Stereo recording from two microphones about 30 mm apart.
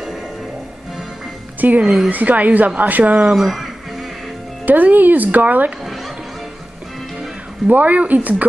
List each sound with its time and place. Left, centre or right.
1.6 s speech: right
2.0 s speech: right
3.3 s speech: centre
4.6 s speech: right
7.7 s speech: right